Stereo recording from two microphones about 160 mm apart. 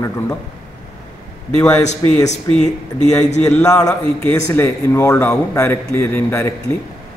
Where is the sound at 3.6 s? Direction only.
20° left (ahead or behind).